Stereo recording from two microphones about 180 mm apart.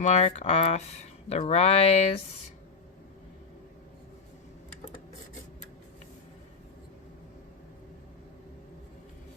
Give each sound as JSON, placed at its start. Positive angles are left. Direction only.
{"t": 0.0, "sound": "speech", "side_deg": 40}